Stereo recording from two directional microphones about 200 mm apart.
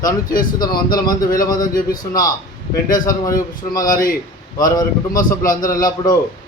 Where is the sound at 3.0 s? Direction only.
20° left (ahead or behind).